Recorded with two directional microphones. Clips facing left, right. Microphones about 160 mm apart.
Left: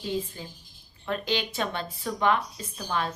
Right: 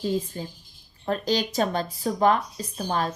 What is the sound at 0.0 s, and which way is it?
Speech, 40° right (ahead or behind).